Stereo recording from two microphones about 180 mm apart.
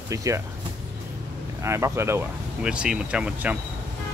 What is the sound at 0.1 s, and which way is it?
Speech, 15° right (ahead or behind).